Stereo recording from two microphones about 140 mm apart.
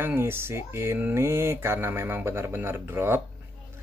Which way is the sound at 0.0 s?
15° right (ahead or behind).